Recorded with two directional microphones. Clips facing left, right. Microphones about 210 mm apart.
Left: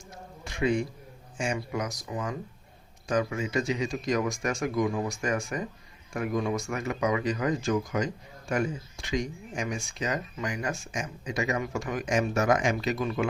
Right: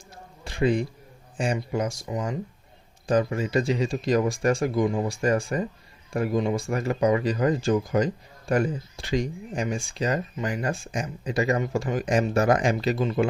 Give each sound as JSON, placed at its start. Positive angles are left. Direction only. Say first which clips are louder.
{"t": 0.4, "sound": "a sound", "louder": "right 3 dB", "side_deg": -30}
{"t": 1.7, "sound": "speech", "louder": "right 5 dB", "side_deg": -30}
{"t": 3.1, "sound": "speech", "louder": "right 5 dB", "side_deg": -35}